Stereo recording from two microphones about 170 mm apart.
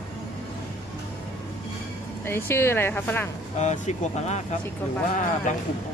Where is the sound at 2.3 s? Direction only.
15° left (ahead or behind).